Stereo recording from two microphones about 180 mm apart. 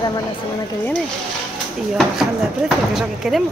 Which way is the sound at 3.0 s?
Centre (ahead or behind).